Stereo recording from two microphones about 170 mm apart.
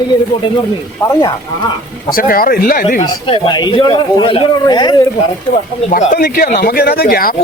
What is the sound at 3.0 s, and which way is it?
Speech, 30° left (ahead or behind).